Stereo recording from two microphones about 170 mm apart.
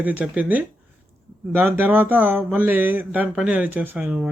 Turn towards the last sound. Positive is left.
turn(degrees=-5)  # may be behind; listen again after turning